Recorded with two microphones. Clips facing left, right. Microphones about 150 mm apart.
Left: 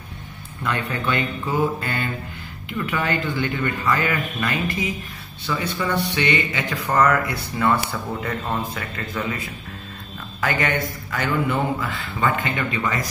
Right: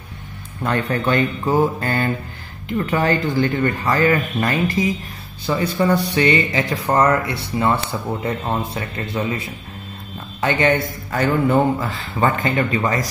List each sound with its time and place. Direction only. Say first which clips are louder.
0.6 s speech: right 5 dB; 40° right (ahead or behind)
11.1 s speech: right 6 dB; 35° right (ahead or behind)